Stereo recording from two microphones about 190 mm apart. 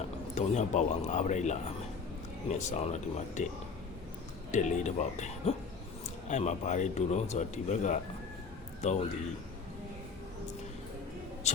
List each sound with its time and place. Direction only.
0.3 s speech: 40° left (ahead or behind)
4.5 s speech: 40° left (ahead or behind)
11.4 s a sound: 35° left (ahead or behind)